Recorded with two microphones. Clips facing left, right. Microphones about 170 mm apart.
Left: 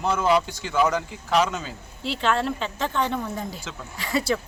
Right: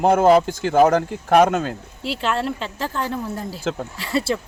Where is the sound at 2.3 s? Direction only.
35° right (ahead or behind).